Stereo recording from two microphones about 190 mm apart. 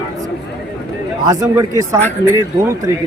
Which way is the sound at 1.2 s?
20° right (ahead or behind).